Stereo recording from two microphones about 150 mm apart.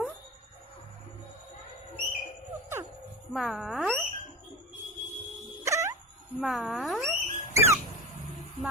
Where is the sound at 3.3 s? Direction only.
Centre (ahead or behind).